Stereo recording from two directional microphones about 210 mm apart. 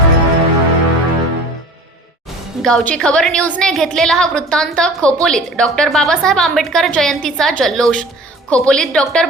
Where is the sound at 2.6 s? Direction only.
Centre (ahead or behind).